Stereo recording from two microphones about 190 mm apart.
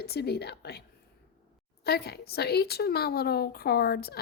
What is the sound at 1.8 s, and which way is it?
A woman's voice, 60° left (ahead or behind).